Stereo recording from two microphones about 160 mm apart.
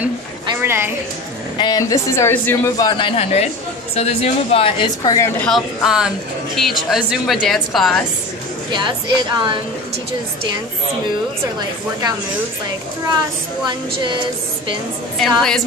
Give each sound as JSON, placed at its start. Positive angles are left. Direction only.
{"t": 0.6, "sound": "a sound", "side_deg": -15}
{"t": 1.6, "sound": "speech", "side_deg": 25}
{"t": 2.8, "sound": "a woman's voice", "side_deg": 30}
{"t": 5.4, "sound": "speech", "side_deg": 0}
{"t": 13.7, "sound": "speech", "side_deg": -30}
{"t": 15.1, "sound": "speech", "side_deg": 0}